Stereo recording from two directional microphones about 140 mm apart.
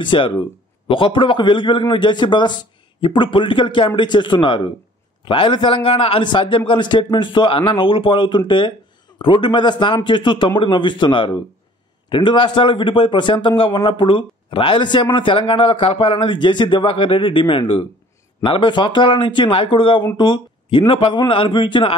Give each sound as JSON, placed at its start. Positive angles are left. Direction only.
{"t": 0.0, "sound": "speech", "side_deg": 35}